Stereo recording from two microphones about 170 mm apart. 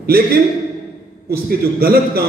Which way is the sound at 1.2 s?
60° right (ahead or behind).